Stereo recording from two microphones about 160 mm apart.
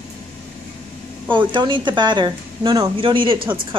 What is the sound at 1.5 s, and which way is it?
Speech, 30° right (ahead or behind).